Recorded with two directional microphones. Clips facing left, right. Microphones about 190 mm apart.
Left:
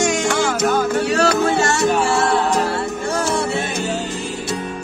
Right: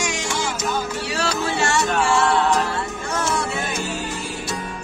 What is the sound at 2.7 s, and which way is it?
Music, 35° left (ahead or behind).